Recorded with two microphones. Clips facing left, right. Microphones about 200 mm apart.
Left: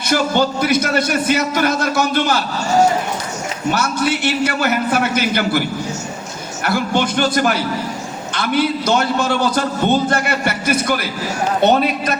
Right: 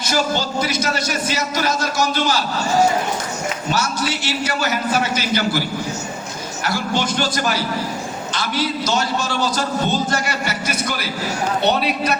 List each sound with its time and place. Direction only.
0.1 s a man's voice: 55° left (ahead or behind)
3.7 s a man's voice: 55° left (ahead or behind)
6.7 s a man's voice: 55° left (ahead or behind)